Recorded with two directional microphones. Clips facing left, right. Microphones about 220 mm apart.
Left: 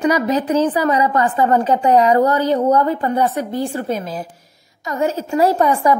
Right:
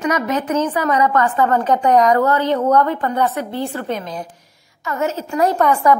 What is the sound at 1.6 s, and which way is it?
Speech, 30° left (ahead or behind).